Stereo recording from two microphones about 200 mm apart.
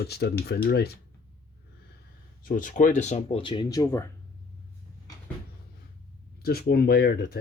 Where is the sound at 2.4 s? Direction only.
40° left (ahead or behind); by 4.1 s 15° left (ahead or behind).